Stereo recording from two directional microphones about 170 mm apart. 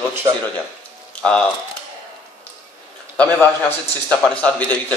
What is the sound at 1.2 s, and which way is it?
Speech, 5° left (ahead or behind).